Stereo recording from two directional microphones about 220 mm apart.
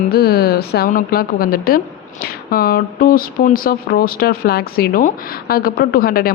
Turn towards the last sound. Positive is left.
turn(degrees=40)  # may be behind; listen again after turning